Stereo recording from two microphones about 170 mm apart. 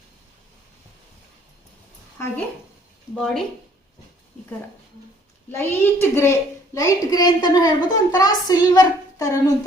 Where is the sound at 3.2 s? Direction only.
Centre (ahead or behind).